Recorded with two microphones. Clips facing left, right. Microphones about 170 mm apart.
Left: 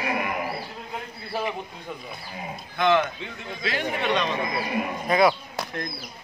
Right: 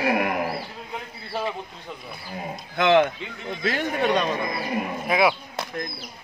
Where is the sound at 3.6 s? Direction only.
45° right (ahead or behind).